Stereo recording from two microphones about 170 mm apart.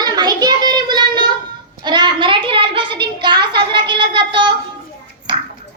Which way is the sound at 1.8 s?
25° right (ahead or behind).